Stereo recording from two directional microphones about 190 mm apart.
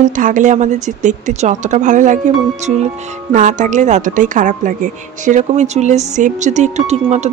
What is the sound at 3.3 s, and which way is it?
Speech, 40° right (ahead or behind).